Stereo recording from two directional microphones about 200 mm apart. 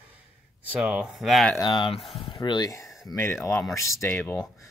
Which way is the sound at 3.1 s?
15° left (ahead or behind).